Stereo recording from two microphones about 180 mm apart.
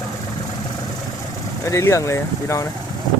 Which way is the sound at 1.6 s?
15° left (ahead or behind).